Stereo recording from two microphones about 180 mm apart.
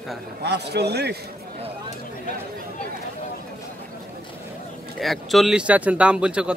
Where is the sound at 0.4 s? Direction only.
65° right (ahead or behind).